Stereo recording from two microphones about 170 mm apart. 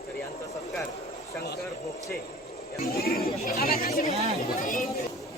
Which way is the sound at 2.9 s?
65° left (ahead or behind).